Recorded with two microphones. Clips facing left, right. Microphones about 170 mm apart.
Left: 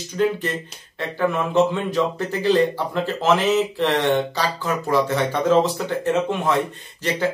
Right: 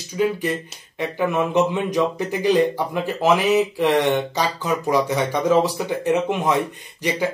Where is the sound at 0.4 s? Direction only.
15° right (ahead or behind).